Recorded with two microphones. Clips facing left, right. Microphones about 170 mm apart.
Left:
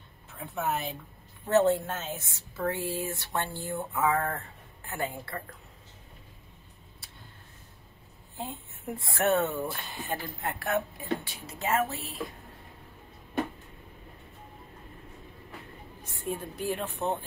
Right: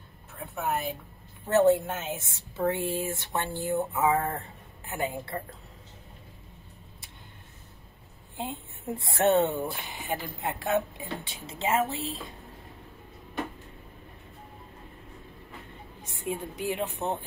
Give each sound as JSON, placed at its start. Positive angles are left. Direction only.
{"t": 1.5, "sound": "speech", "side_deg": -15}
{"t": 8.4, "sound": "speech", "side_deg": -20}
{"t": 16.1, "sound": "speech", "side_deg": -15}